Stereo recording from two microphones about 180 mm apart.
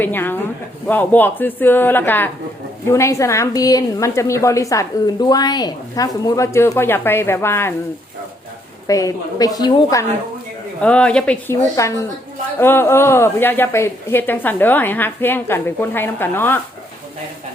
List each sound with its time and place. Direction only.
0.0 s a woman's voice: 10° left (ahead or behind)
8.9 s a woman's voice: 20° left (ahead or behind)
10.8 s a woman's voice: 5° left (ahead or behind)
11.8 s a woman's voice: 15° left (ahead or behind)